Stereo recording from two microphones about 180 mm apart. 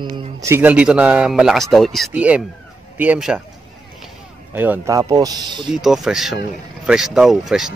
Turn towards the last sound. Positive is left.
turn(degrees=0)  # may be behind; listen again after turning